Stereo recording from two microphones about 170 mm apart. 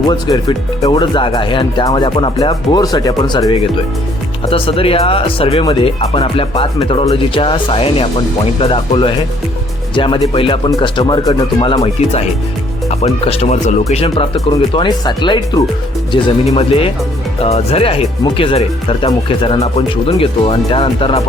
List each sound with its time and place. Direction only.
0.1 s speech: 25° left (ahead or behind)